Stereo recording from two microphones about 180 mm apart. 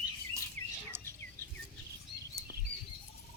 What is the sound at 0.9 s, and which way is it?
Bird, 15° right (ahead or behind).